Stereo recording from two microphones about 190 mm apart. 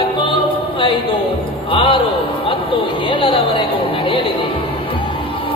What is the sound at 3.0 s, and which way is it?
Speech, 25° left (ahead or behind).